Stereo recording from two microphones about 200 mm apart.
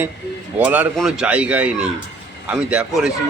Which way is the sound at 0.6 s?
10° right (ahead or behind).